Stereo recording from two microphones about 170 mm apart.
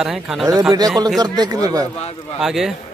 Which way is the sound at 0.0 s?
5° right (ahead or behind).